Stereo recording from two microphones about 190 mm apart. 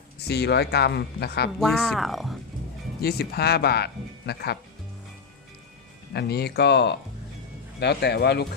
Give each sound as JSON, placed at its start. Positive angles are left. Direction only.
{"t": 0.2, "sound": "speech", "side_deg": 60}
{"t": 1.5, "sound": "speech", "side_deg": 0}
{"t": 3.0, "sound": "speech", "side_deg": 55}
{"t": 6.1, "sound": "speech", "side_deg": 60}